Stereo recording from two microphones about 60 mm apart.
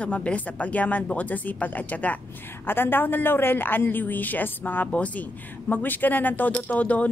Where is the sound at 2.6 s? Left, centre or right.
Left.